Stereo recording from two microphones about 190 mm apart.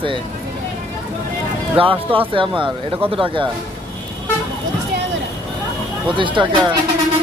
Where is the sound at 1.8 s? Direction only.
30° right (ahead or behind).